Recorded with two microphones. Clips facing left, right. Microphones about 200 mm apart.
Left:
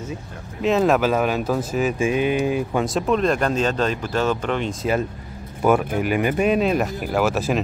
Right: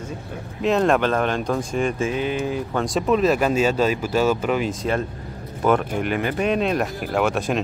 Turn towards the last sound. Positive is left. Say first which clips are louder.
# left 1 dB
turn(degrees=5)  # may be behind; listen again after turning